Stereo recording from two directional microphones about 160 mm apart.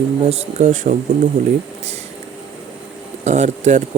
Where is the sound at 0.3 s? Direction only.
45° right (ahead or behind).